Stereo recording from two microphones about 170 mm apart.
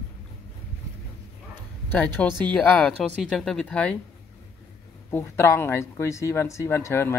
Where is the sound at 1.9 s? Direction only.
10° left (ahead or behind).